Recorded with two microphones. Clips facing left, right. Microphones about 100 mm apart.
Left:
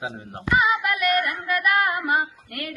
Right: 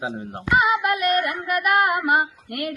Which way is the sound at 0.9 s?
30° right (ahead or behind).